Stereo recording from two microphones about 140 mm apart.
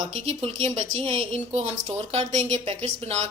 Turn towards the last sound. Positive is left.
turn(degrees=-50)  # may be behind; listen again after turning